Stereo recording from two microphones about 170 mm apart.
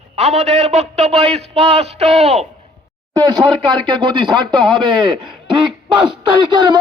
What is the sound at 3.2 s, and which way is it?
Speech, 25° right (ahead or behind).